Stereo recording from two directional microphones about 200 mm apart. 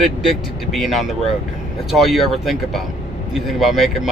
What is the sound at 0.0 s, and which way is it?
Speech, centre (ahead or behind).